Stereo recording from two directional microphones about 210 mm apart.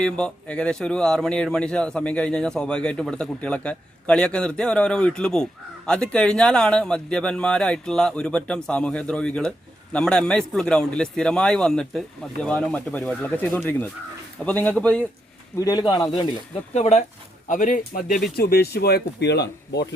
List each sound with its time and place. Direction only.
0.0 s a man's voice: 5° left (ahead or behind)
15.6 s speech: 20° left (ahead or behind); by 19.9 s 55° left (ahead or behind)